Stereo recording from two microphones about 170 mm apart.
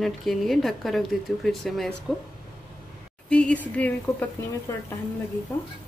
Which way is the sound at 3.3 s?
5° left (ahead or behind).